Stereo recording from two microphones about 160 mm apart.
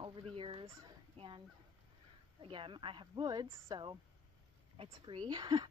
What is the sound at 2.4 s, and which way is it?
A woman's voice, 30° right (ahead or behind).